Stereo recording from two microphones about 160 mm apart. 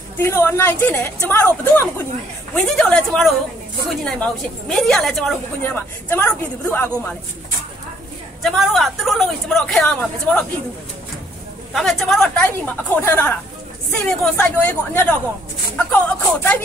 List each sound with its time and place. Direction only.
0.2 s a woman's voice: 15° left (ahead or behind)
2.5 s speech: 5° left (ahead or behind)
5.6 s a woman's voice: 10° left (ahead or behind)
8.4 s speech: centre (ahead or behind)
11.7 s a woman's voice: centre (ahead or behind)